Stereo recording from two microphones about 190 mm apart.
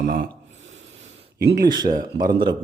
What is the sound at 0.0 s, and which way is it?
Speech, 45° right (ahead or behind).